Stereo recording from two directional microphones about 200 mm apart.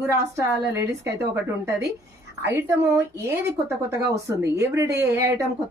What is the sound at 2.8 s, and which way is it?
Speech, 15° right (ahead or behind).